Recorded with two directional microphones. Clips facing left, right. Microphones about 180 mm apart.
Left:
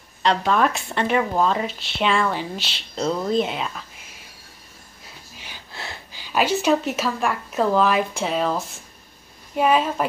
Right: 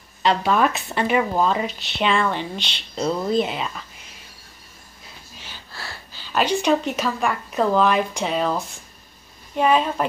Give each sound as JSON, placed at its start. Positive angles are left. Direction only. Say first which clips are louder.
{"t": 0.2, "sound": "speech", "louder": "right 1 dB", "side_deg": -5}
{"t": 5.4, "sound": "speech", "louder": "left 1 dB", "side_deg": 15}